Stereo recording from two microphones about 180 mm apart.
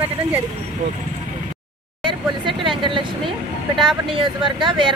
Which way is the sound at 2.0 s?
30° right (ahead or behind).